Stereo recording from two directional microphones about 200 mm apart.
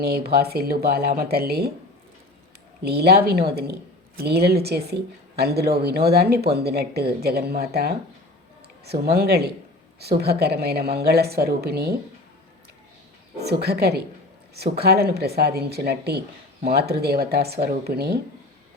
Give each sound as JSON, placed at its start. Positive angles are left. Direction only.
{"t": 0.3, "sound": "speech", "side_deg": -50}
{"t": 2.8, "sound": "speech", "side_deg": -55}
{"t": 13.4, "sound": "speech", "side_deg": -55}